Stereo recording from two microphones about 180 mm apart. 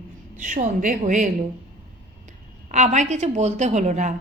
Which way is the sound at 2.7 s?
40° right (ahead or behind).